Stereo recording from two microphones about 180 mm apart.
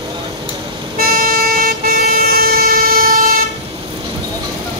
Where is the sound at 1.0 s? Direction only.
55° right (ahead or behind).